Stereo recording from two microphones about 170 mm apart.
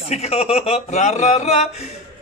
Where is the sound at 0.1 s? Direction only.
40° left (ahead or behind).